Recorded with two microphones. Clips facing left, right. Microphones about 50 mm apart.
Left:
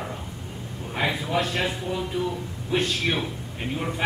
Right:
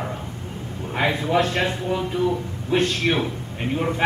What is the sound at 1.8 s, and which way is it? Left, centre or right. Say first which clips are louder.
A man's voice: right 5 dB; centre.